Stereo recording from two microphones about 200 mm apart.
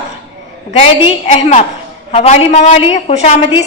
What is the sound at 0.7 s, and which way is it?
A woman's voice, 30° left (ahead or behind).